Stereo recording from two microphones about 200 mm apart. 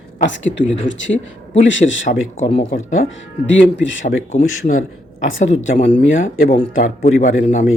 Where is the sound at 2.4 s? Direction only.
35° left (ahead or behind).